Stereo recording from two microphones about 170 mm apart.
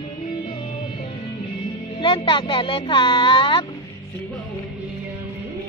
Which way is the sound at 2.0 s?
30° left (ahead or behind).